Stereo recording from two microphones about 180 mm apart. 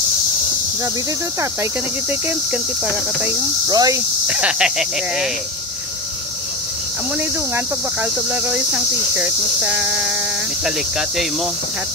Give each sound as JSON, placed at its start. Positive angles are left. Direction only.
{"t": 1.4, "sound": "speech", "side_deg": -10}
{"t": 3.6, "sound": "cricket", "side_deg": -20}
{"t": 4.3, "sound": "speech", "side_deg": -5}
{"t": 7.2, "sound": "speech", "side_deg": -10}